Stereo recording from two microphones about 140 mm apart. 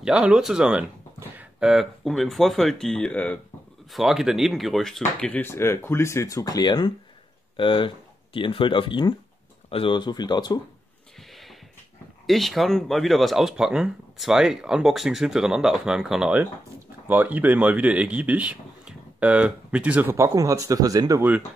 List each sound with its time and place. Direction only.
0.0 s speech: 5° right (ahead or behind); by 3.3 s 10° left (ahead or behind)
3.9 s speech: centre (ahead or behind); by 10.6 s 30° left (ahead or behind)
11.1 s a sound: centre (ahead or behind)
12.3 s speech: centre (ahead or behind); by 21.2 s 25° right (ahead or behind)